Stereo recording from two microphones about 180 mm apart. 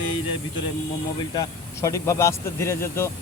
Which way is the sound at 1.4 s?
15° left (ahead or behind).